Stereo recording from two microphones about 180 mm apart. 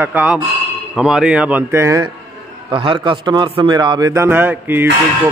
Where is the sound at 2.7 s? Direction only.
25° right (ahead or behind).